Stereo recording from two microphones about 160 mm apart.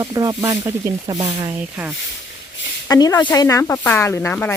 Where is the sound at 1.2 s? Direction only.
35° right (ahead or behind).